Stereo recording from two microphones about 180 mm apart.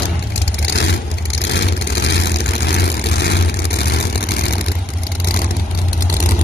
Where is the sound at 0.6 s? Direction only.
75° left (ahead or behind).